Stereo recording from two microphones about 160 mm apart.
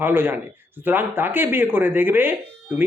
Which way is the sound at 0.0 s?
10° right (ahead or behind).